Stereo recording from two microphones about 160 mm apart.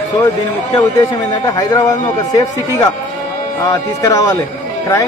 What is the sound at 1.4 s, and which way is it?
A man's voice, 20° left (ahead or behind).